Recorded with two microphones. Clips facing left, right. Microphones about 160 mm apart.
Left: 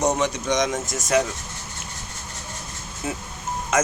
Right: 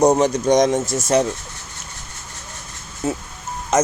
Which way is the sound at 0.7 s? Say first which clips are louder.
Right 4 dB; 30° right (ahead or behind).